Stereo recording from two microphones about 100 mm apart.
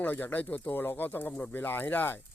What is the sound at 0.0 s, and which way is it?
A man's voice, 20° left (ahead or behind).